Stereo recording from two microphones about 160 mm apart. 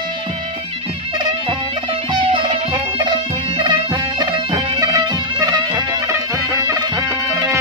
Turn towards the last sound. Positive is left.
turn(degrees=-15)  # may be behind; listen again after turning